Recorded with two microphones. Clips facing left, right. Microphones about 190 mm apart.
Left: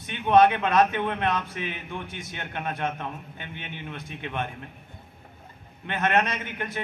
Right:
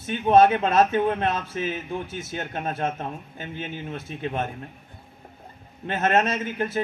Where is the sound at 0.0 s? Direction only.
35° right (ahead or behind).